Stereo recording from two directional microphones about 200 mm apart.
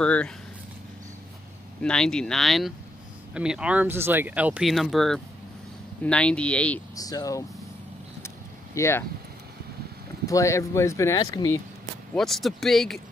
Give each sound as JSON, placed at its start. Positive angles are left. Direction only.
{"t": 0.0, "sound": "speech", "side_deg": 5}
{"t": 1.8, "sound": "speech", "side_deg": 5}
{"t": 7.0, "sound": "speech", "side_deg": 20}
{"t": 8.7, "sound": "speech", "side_deg": 15}
{"t": 10.2, "sound": "speech", "side_deg": 15}
{"t": 12.2, "sound": "speech", "side_deg": 0}